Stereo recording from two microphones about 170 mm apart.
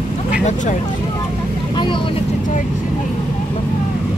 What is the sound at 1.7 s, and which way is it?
Speech, 25° left (ahead or behind).